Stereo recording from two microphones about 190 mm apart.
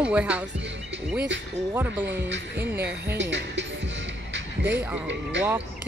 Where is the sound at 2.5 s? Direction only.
10° right (ahead or behind).